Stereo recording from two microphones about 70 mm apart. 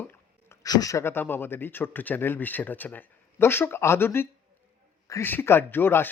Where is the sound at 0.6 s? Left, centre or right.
Left.